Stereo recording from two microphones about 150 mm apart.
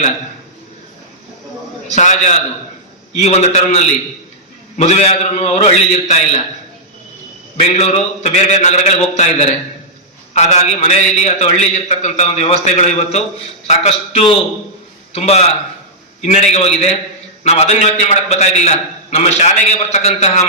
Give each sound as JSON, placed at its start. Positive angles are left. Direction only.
{"t": 1.9, "sound": "a man's voice", "side_deg": 50}
{"t": 7.5, "sound": "a man's voice", "side_deg": 45}